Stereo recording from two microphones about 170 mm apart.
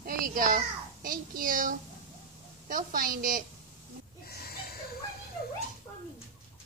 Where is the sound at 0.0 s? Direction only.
55° right (ahead or behind).